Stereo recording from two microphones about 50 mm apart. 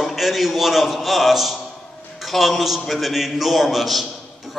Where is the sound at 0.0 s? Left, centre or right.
Centre.